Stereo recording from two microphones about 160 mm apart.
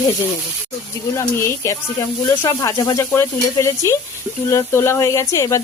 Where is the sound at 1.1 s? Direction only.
20° left (ahead or behind).